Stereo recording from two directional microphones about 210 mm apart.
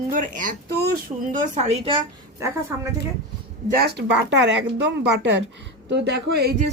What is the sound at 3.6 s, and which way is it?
Speech, 45° right (ahead or behind).